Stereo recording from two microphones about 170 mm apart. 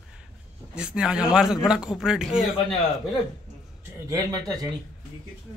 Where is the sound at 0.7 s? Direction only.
5° right (ahead or behind).